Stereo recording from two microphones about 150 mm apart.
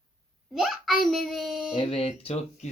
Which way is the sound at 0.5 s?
Centre (ahead or behind).